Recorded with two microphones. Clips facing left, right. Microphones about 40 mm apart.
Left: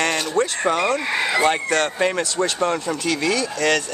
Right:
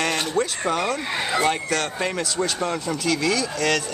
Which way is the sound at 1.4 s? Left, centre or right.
Left.